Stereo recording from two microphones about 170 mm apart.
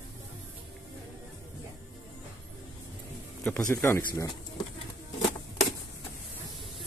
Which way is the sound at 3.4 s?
15° left (ahead or behind).